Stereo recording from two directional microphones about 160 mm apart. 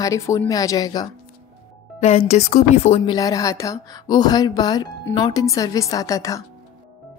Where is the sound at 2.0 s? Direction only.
40° left (ahead or behind).